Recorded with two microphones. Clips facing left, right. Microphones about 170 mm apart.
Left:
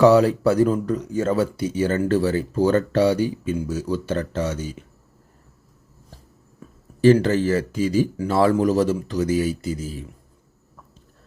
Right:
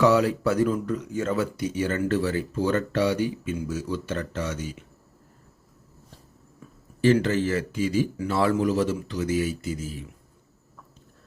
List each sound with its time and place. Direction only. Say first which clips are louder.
0.0 s speech: left 6 dB; 35° left (ahead or behind)
7.0 s speech: left 5 dB; 35° left (ahead or behind)